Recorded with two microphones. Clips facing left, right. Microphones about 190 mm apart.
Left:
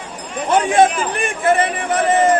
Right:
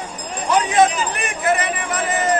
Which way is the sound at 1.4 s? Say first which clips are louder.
Left 4 dB; 30° left (ahead or behind).